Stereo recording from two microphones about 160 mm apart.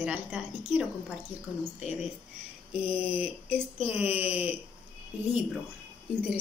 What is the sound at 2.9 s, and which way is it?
A woman's voice, 10° right (ahead or behind).